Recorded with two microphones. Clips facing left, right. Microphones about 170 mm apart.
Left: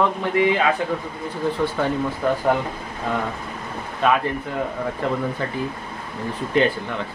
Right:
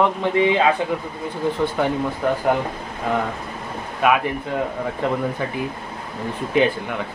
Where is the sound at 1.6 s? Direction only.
15° right (ahead or behind).